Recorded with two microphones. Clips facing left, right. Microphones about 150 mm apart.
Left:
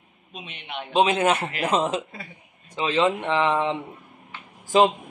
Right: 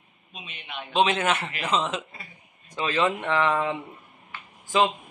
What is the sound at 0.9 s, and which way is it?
Speech, 35° left (ahead or behind).